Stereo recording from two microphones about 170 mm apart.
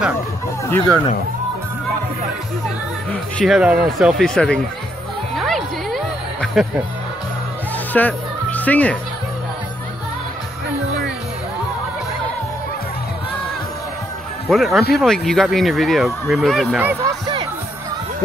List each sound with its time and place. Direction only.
0.7 s speech: 10° left (ahead or behind)
3.1 s speech: 5° left (ahead or behind)
3.5 s speech: 5° right (ahead or behind)
5.4 s music: centre (ahead or behind)
7.9 s speech: 10° left (ahead or behind)
14.5 s speech: centre (ahead or behind)
17.0 s a sound: 30° right (ahead or behind)